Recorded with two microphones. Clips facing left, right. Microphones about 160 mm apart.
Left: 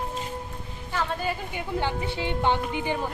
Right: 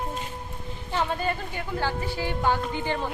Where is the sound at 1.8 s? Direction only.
20° left (ahead or behind).